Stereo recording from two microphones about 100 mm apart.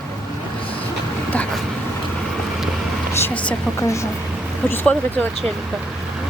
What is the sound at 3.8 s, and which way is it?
Speech, 30° left (ahead or behind).